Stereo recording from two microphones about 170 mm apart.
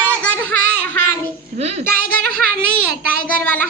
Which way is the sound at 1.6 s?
40° right (ahead or behind).